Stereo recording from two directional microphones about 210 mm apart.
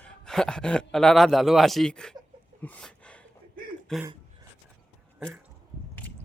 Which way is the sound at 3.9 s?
5° left (ahead or behind).